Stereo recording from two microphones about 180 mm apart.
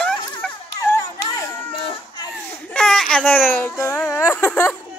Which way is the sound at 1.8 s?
30° left (ahead or behind).